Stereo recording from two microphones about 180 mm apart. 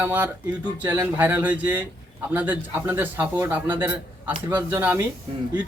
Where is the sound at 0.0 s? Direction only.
10° right (ahead or behind).